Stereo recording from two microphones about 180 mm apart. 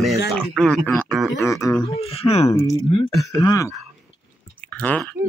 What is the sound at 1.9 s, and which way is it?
Speech, 35° left (ahead or behind).